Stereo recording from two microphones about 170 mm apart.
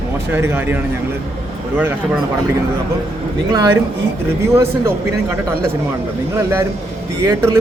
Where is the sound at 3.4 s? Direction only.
20° right (ahead or behind).